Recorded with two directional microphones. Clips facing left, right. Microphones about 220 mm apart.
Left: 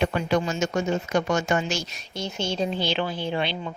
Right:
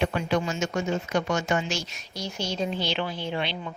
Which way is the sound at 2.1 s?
25° left (ahead or behind).